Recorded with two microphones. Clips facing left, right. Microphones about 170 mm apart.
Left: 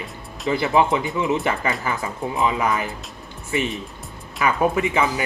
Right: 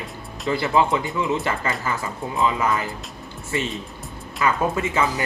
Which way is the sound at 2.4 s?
20° left (ahead or behind).